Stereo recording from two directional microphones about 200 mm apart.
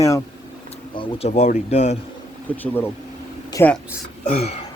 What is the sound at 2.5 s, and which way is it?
A man's voice, 10° left (ahead or behind).